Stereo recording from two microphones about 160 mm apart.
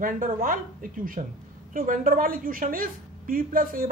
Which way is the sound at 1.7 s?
60° right (ahead or behind).